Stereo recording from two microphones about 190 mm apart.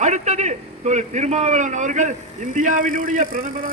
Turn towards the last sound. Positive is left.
turn(degrees=-45)  # may be behind; listen again after turning